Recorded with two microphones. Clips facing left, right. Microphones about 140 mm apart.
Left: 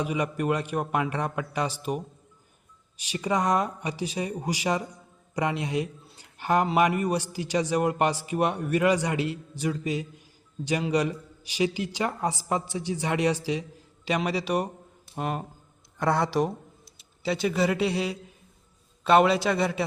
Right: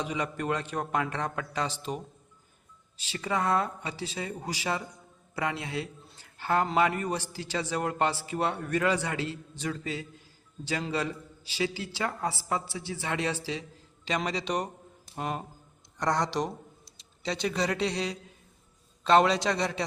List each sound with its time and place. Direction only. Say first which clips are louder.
0.0 s a man's voice: left 4 dB; 10° left (ahead or behind)
3.0 s a man's voice: left 4 dB; 15° left (ahead or behind)